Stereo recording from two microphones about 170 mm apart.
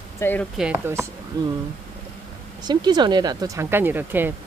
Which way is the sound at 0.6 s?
10° right (ahead or behind).